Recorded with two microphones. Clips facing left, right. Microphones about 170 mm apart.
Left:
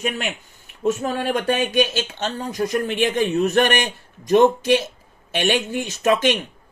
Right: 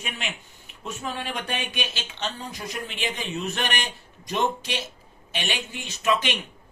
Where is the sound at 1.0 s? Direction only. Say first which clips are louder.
Left 10 dB; 45° left (ahead or behind).